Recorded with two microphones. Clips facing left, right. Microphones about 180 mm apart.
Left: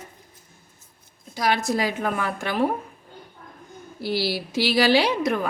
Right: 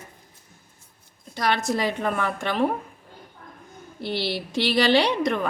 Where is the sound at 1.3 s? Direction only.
Centre (ahead or behind).